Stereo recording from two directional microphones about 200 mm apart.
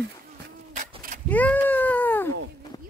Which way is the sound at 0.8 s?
40° right (ahead or behind).